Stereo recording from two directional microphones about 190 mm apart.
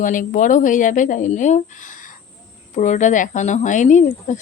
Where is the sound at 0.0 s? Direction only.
45° left (ahead or behind).